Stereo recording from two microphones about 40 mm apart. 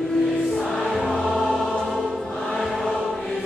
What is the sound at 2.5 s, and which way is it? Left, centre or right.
Choir, centre.